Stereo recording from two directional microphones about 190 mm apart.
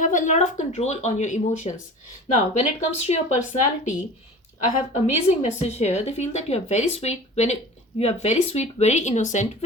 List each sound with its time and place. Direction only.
0.0 s speech: 40° left (ahead or behind)
5.4 s speech: 35° left (ahead or behind)